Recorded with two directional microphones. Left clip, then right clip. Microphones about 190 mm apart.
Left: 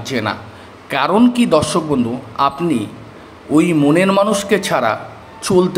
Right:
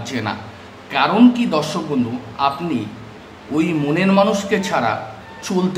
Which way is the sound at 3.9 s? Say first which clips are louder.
Right 1 dB; 30° left (ahead or behind).